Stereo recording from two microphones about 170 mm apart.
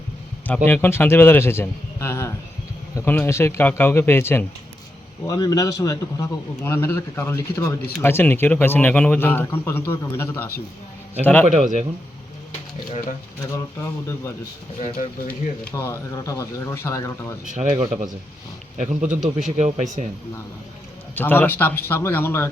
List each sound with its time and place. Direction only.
0.4 s a man's voice: 10° left (ahead or behind)
11.4 s speech: 45° right (ahead or behind)
12.5 s a sound: 40° left (ahead or behind)
14.8 s speech: 50° left (ahead or behind)
15.6 s a man's voice: 15° left (ahead or behind)
17.4 s speech: 50° right (ahead or behind)
19.0 s speech: 5° right (ahead or behind)
19.5 s speech: 45° right (ahead or behind)
21.2 s a man's voice: 10° left (ahead or behind)